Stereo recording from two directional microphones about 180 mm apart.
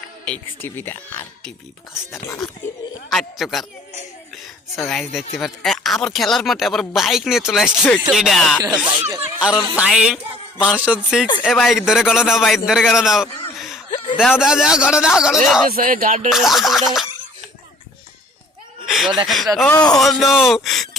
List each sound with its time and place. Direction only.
0.3 s speech: 10° left (ahead or behind)
3.1 s speech: centre (ahead or behind)
5.4 s speech: centre (ahead or behind)
8.8 s a man's voice: 10° right (ahead or behind)
15.7 s music: 50° right (ahead or behind)
16.3 s cough: centre (ahead or behind)
18.9 s a sound: centre (ahead or behind)
19.7 s speech: 20° left (ahead or behind)
20.0 s speech: centre (ahead or behind)